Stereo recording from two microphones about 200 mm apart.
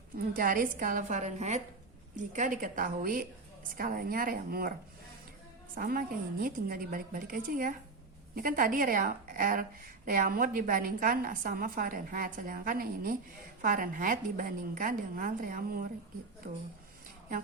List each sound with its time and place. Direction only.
0.3 s a woman's voice: 45° right (ahead or behind)
5.7 s a woman's voice: 45° right (ahead or behind)